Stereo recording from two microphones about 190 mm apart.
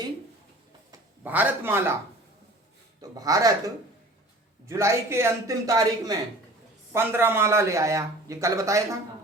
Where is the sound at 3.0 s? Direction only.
20° right (ahead or behind).